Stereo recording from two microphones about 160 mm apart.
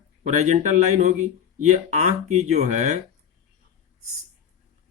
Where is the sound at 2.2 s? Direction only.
45° right (ahead or behind).